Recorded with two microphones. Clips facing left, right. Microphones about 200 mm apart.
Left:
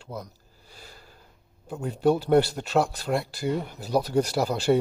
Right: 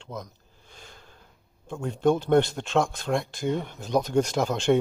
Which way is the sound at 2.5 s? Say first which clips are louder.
Left 1 dB; 5° left (ahead or behind).